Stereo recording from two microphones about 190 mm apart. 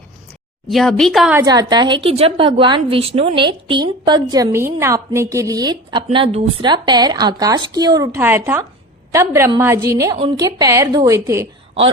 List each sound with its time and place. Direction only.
0.7 s speech: centre (ahead or behind)
1.4 s a woman's voice: 20° right (ahead or behind)